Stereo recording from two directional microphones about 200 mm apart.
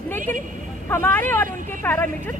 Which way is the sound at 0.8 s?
10° left (ahead or behind).